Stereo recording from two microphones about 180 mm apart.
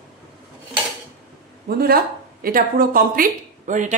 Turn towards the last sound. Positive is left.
turn(degrees=-45)  # may be behind; listen again after turning